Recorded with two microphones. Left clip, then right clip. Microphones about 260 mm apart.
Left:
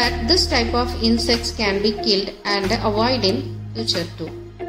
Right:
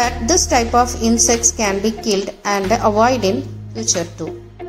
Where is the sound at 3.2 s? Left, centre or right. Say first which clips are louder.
Right 2 dB; right.